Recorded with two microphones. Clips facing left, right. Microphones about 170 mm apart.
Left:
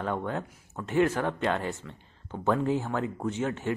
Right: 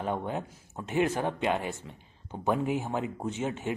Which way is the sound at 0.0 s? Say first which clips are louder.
Left 1 dB; 20° right (ahead or behind).